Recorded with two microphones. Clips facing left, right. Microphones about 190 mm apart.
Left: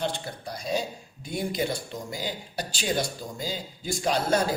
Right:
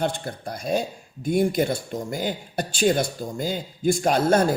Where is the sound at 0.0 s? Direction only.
50° right (ahead or behind).